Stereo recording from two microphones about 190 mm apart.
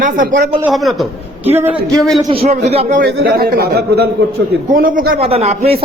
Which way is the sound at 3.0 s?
55° right (ahead or behind).